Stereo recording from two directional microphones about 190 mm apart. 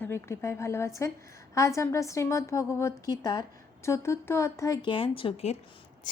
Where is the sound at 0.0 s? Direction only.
15° left (ahead or behind); by 5.5 s 30° left (ahead or behind).